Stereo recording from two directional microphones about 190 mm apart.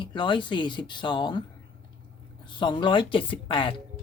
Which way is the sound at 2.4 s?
25° left (ahead or behind).